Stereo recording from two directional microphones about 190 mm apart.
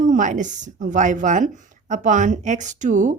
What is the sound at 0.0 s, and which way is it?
Speech, 40° right (ahead or behind).